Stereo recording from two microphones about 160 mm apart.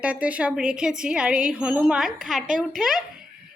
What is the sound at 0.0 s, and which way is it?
A woman's voice, 10° right (ahead or behind).